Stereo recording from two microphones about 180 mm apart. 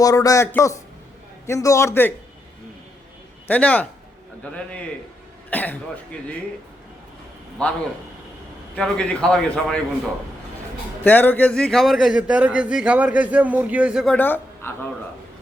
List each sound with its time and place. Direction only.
0.0 s a man's voice: 20° left (ahead or behind)
3.4 s a man's voice: 10° left (ahead or behind)
7.6 s a man's voice: 5° left (ahead or behind)
11.0 s a man's voice: 10° left (ahead or behind)